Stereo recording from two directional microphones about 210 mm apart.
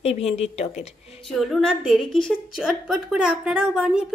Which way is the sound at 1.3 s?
Centre (ahead or behind).